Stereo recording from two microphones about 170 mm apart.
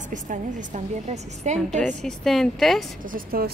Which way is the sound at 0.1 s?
50° right (ahead or behind).